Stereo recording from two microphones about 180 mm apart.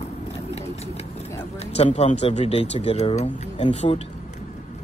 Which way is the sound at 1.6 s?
35° left (ahead or behind).